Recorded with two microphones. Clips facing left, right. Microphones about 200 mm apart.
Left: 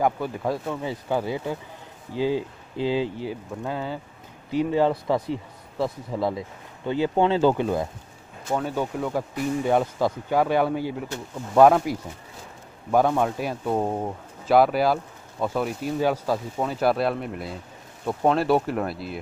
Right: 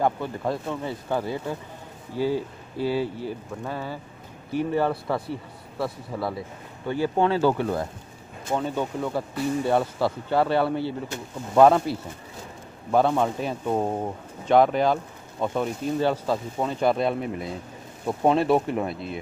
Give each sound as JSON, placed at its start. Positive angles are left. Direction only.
{"t": 0.0, "sound": "speech", "side_deg": 10}